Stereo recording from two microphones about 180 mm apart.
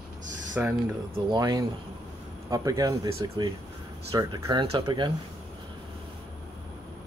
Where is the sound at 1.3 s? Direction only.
20° right (ahead or behind).